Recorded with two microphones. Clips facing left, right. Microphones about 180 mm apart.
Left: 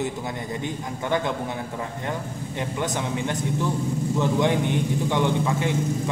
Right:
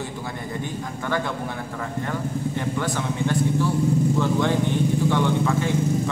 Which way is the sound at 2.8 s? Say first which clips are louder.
Left 1 dB; 20° left (ahead or behind).